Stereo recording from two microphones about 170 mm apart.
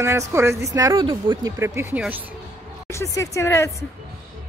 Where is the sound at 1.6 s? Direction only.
15° right (ahead or behind).